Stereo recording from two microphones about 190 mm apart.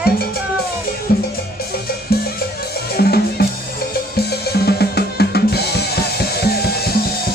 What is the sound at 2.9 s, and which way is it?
Drum, 55° left (ahead or behind).